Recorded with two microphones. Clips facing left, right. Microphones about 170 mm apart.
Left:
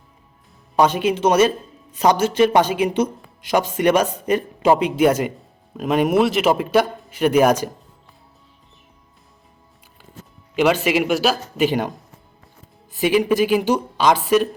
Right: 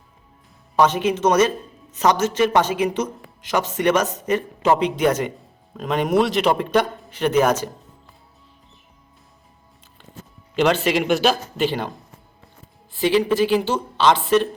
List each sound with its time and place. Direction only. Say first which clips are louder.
0.8 s a man's voice: left 1 dB; 10° left (ahead or behind)
4.0 s a man's voice: left 2 dB; 30° left (ahead or behind)
4.3 s a man's voice: left 2 dB; 10° left (ahead or behind)
10.5 s a man's voice: left 1 dB; 10° left (ahead or behind)
13.0 s a man's voice: left 1 dB; 10° left (ahead or behind)